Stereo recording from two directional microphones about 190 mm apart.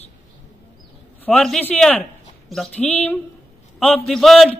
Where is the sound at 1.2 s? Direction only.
5° left (ahead or behind).